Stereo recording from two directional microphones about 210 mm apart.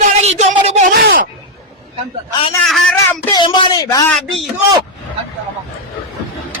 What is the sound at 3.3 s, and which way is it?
Speech, 20° left (ahead or behind).